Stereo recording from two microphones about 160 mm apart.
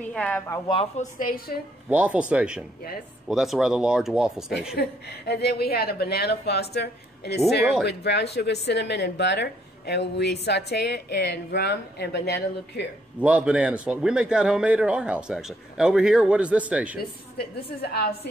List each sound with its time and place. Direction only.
0.0 s speech: 10° left (ahead or behind)
0.9 s a woman's voice: 65° left (ahead or behind)
1.9 s a man's voice: 10° right (ahead or behind)
4.7 s a woman's voice: 90° left
13.2 s a man's voice: 10° right (ahead or behind)
17.0 s a woman's voice: 75° left (ahead or behind)